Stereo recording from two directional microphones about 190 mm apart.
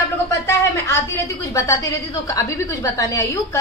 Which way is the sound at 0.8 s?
15° left (ahead or behind).